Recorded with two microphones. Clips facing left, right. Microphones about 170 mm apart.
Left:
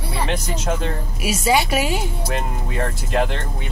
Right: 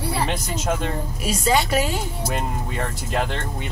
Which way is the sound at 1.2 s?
10° left (ahead or behind).